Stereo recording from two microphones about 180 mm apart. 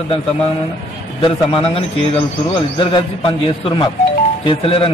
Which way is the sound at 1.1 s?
30° left (ahead or behind).